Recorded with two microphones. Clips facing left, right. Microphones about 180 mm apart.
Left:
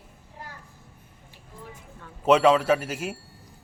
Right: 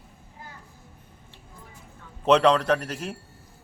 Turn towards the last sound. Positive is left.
turn(degrees=5)  # may be behind; listen again after turning